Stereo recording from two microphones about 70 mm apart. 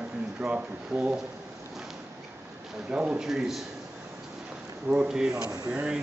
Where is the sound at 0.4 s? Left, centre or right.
Centre.